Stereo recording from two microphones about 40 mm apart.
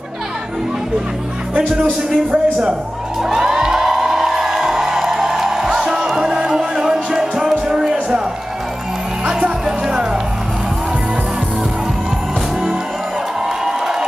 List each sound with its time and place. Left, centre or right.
1.9 s speech: right
3.2 s music: centre
9.7 s music: centre
13.7 s crowd: centre